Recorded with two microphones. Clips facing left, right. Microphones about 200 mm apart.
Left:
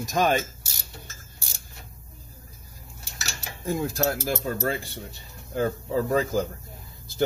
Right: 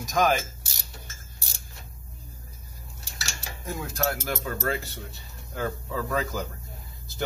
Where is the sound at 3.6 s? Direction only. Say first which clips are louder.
Left 4 dB; 30° left (ahead or behind).